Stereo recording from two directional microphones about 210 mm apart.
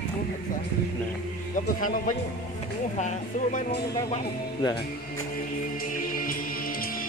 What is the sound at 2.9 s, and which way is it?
Speech, 35° left (ahead or behind).